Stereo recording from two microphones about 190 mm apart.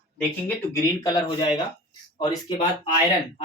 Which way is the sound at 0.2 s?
15° left (ahead or behind).